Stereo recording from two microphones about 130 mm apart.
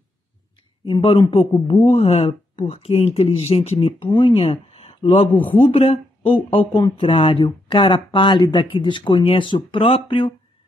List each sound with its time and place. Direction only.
0.8 s speech: 40° left (ahead or behind)